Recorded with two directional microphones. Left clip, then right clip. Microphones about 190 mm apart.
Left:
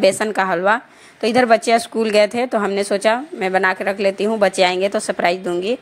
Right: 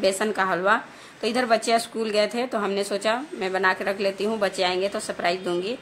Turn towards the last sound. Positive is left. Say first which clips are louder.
# left 6 dB
turn(degrees=35)  # may be behind; listen again after turning